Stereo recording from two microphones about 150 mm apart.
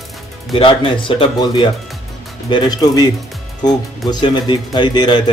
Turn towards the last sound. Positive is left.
turn(degrees=30)  # may be behind; listen again after turning